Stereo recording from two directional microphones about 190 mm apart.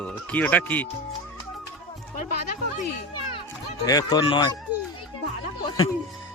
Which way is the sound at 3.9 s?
20° left (ahead or behind).